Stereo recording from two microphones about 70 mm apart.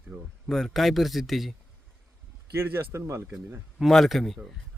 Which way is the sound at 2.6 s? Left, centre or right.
Right.